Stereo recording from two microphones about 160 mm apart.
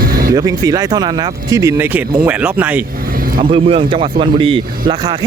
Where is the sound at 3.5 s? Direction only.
35° right (ahead or behind).